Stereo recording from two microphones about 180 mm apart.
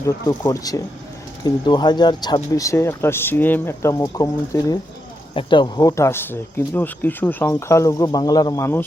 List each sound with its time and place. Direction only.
0.0 s speech: 20° left (ahead or behind)